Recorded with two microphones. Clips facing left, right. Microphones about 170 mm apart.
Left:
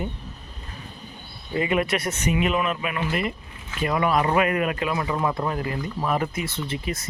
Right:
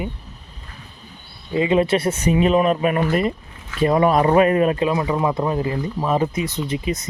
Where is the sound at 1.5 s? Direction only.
25° right (ahead or behind).